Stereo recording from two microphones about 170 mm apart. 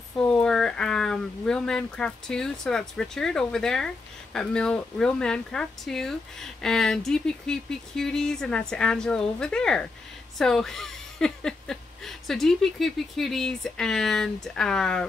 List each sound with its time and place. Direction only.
0.2 s speech: 5° left (ahead or behind)